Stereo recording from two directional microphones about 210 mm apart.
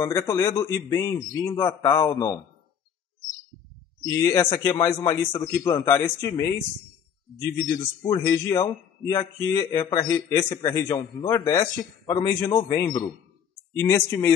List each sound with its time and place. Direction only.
0.0 s a man's voice: 10° left (ahead or behind)
4.0 s a man's voice: 15° left (ahead or behind)